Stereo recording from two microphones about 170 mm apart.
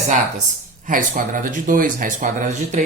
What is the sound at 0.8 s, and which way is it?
A woman's voice, 55° right (ahead or behind).